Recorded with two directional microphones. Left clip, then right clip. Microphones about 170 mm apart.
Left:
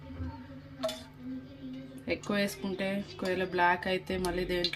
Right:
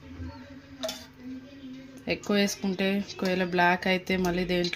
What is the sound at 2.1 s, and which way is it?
Speech, 60° right (ahead or behind).